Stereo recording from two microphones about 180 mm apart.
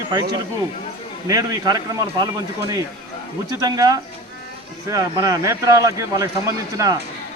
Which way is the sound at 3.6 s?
20° right (ahead or behind).